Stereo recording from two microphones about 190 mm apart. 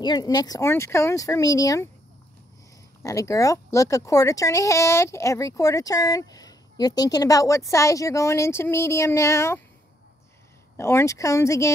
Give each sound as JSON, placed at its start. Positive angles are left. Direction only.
{"t": 0.0, "sound": "speech", "side_deg": 20}
{"t": 3.0, "sound": "speech", "side_deg": 15}
{"t": 10.8, "sound": "speech", "side_deg": 15}